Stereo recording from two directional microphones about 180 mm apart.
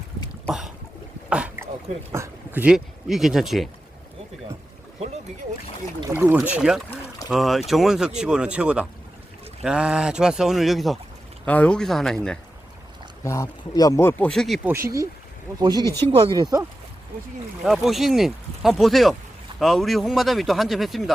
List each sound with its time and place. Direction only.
0.4 s boat: centre (ahead or behind)
1.3 s a sound: 10° right (ahead or behind)
2.1 s speech: 10° right (ahead or behind)
6.0 s speech: 15° right (ahead or behind); by 12.4 s 5° left (ahead or behind)
13.2 s speech: 20° left (ahead or behind); by 14.7 s centre (ahead or behind)
14.7 s speech: 15° right (ahead or behind)
17.6 s speech: centre (ahead or behind)